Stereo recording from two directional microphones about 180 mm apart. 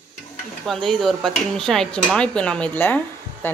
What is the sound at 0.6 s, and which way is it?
Dishes, centre (ahead or behind).